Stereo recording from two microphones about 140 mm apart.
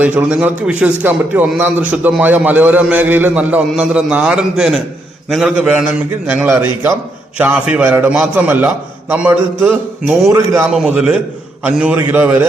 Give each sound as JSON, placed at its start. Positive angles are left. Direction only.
{"t": 0.0, "sound": "a man's voice", "side_deg": -10}
{"t": 10.7, "sound": "a man's voice", "side_deg": -5}